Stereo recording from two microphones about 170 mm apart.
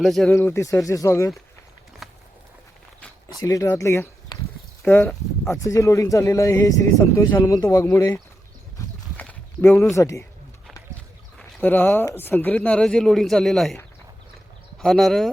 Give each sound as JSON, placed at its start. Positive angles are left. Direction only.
{"t": 0.0, "sound": "speech", "side_deg": 0}
{"t": 0.3, "sound": "speech", "side_deg": 15}
{"t": 2.0, "sound": "walk", "side_deg": 0}
{"t": 3.4, "sound": "speech", "side_deg": 20}
{"t": 9.1, "sound": "clip-clop", "side_deg": 10}
{"t": 9.9, "sound": "speech", "side_deg": 15}
{"t": 11.3, "sound": "speech", "side_deg": 10}
{"t": 14.8, "sound": "speech", "side_deg": 0}